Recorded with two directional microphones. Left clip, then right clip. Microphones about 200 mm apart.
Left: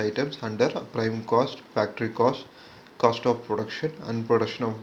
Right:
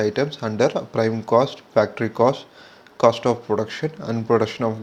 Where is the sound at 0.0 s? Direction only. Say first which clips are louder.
Right 6 dB; 45° right (ahead or behind).